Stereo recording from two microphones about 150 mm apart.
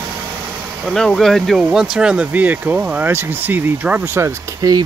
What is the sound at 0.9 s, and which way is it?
Speech, 5° left (ahead or behind).